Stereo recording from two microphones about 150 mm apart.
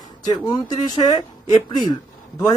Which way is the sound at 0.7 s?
25° left (ahead or behind).